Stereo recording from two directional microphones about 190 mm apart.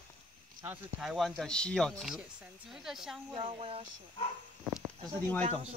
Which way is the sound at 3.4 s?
35° right (ahead or behind).